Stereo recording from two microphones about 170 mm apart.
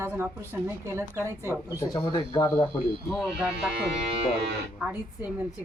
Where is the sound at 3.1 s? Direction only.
5° right (ahead or behind).